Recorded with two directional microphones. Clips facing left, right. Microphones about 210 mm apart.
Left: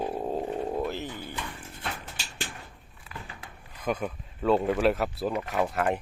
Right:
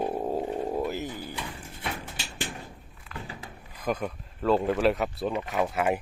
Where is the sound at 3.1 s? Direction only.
5° left (ahead or behind).